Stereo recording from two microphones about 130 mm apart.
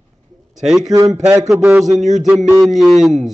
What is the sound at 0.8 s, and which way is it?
Speech, 30° right (ahead or behind).